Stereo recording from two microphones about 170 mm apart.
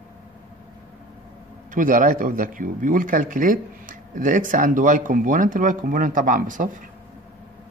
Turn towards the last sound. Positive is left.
turn(degrees=-50)  # may be behind; listen again after turning